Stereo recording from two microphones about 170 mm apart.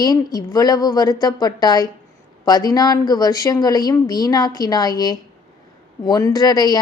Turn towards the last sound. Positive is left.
turn(degrees=20)  # may be behind; listen again after turning